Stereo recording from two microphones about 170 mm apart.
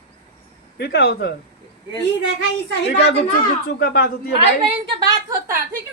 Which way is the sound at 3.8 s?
65° left (ahead or behind).